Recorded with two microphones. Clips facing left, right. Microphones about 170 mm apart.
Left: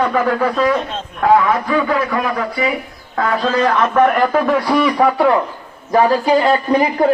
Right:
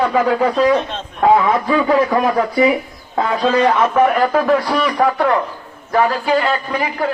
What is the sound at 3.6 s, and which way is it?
A man's voice, 5° right (ahead or behind).